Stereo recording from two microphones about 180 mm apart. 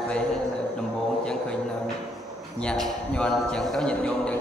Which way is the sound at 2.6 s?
5° left (ahead or behind).